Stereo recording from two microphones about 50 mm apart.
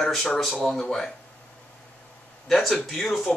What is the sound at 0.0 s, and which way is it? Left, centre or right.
Speech, centre.